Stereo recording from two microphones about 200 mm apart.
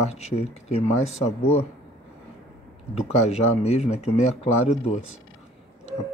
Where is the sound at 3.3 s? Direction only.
30° left (ahead or behind).